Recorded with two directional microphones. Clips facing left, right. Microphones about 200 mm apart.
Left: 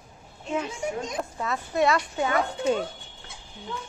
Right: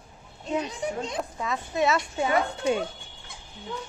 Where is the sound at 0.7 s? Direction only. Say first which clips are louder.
Even; 30° right (ahead or behind).